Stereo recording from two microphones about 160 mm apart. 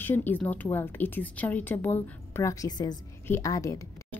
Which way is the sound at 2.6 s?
25° left (ahead or behind).